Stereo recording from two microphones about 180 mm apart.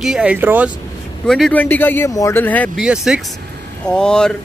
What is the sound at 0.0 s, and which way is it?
Speech, 5° right (ahead or behind).